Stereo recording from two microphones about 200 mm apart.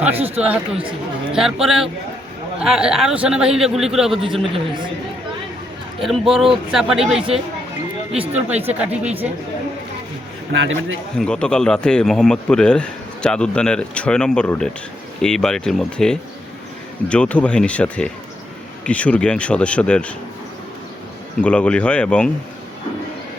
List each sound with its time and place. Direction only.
0.4 s speech: 5° right (ahead or behind)
6.0 s speech: centre (ahead or behind)
7.2 s speech: 30° right (ahead or behind)
8.7 s speech: 5° right (ahead or behind)
10.5 s a man's voice: 70° right (ahead or behind)
11.2 s speech: 5° left (ahead or behind)
21.4 s speech: 5° left (ahead or behind)